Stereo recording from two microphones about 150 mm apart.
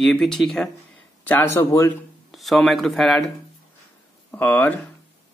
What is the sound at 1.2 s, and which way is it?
Speech, 15° left (ahead or behind).